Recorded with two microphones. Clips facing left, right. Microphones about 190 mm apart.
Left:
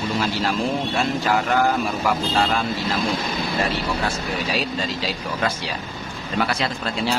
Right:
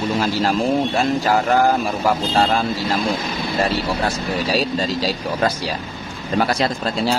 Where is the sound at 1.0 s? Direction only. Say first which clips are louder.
Right 3 dB; 40° right (ahead or behind).